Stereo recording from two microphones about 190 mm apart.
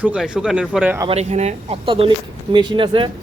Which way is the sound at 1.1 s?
35° right (ahead or behind).